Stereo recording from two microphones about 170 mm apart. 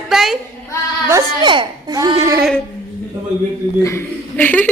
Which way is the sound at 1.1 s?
25° right (ahead or behind).